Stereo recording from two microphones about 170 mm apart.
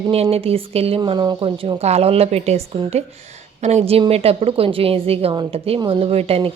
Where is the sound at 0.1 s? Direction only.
35° right (ahead or behind).